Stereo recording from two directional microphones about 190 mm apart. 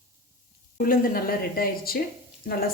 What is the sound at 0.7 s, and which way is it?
A woman's voice, 50° left (ahead or behind).